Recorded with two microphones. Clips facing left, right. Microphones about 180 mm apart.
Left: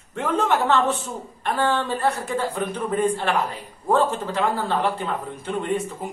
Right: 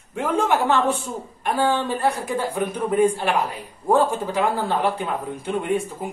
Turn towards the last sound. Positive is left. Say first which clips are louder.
# right 2 dB
turn(degrees=-10)  # may be behind; listen again after turning